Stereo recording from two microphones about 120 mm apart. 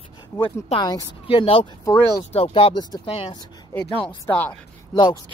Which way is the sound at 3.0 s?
55° left (ahead or behind).